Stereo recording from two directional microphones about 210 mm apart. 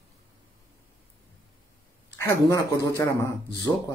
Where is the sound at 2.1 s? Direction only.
10° left (ahead or behind).